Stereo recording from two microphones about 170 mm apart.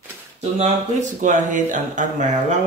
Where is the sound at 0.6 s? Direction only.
45° right (ahead or behind).